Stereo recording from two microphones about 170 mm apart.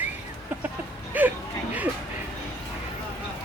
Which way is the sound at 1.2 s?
10° right (ahead or behind).